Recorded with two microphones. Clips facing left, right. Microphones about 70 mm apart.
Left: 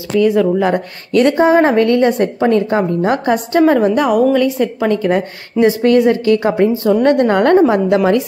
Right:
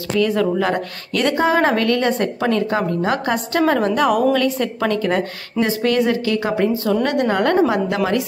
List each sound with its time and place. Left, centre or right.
0.2 s a woman's voice: centre
1.1 s a woman's voice: left
4.0 s a woman's voice: centre
4.4 s a woman's voice: centre; by 8.2 s left